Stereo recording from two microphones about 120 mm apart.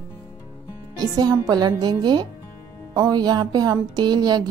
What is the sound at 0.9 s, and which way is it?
Speech, 35° right (ahead or behind).